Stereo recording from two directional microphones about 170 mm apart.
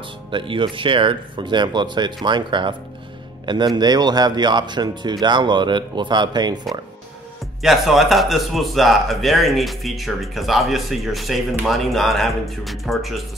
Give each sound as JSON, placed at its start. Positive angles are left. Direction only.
{"t": 0.3, "sound": "speech", "side_deg": -30}
{"t": 7.6, "sound": "speech", "side_deg": 0}